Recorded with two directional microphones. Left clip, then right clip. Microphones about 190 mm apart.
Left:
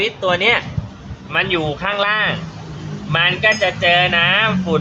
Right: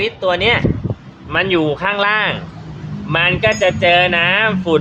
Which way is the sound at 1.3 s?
45° right (ahead or behind).